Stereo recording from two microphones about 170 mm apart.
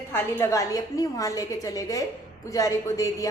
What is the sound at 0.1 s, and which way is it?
Speech, 15° left (ahead or behind).